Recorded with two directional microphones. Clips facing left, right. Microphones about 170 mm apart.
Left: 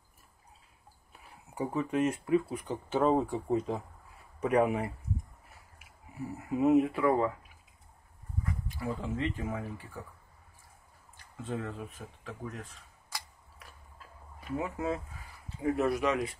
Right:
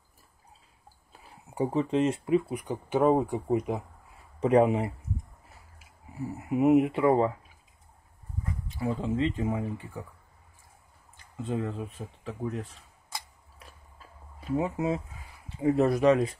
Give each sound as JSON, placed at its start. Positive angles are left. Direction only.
{"t": 1.1, "sound": "speech", "side_deg": -30}
{"t": 6.5, "sound": "speech", "side_deg": -20}
{"t": 8.6, "sound": "speech", "side_deg": -25}
{"t": 11.4, "sound": "speech", "side_deg": -15}
{"t": 12.0, "sound": "speech", "side_deg": -30}
{"t": 14.5, "sound": "speech", "side_deg": -25}
{"t": 15.8, "sound": "speech", "side_deg": -35}